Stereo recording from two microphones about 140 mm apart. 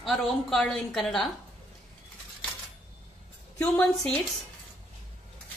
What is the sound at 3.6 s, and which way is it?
Speech, 5° left (ahead or behind).